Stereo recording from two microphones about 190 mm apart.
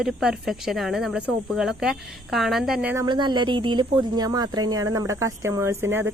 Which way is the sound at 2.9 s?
25° right (ahead or behind).